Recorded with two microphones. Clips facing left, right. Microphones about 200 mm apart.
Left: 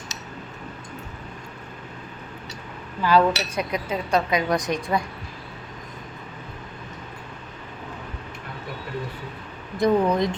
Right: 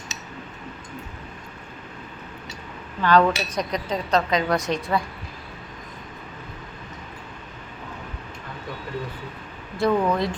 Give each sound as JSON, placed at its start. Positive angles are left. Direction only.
{"t": 3.0, "sound": "speech", "side_deg": 10}
{"t": 9.7, "sound": "speech", "side_deg": 20}